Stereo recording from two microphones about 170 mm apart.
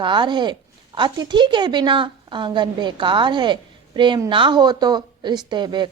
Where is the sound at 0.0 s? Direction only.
30° right (ahead or behind).